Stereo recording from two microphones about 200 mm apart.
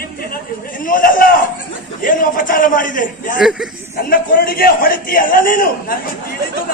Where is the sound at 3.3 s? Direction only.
Centre (ahead or behind).